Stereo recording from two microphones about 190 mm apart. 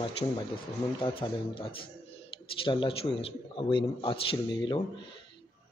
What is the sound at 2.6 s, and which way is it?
Speech, 25° left (ahead or behind).